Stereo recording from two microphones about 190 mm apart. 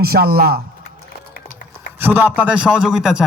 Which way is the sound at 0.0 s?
55° right (ahead or behind).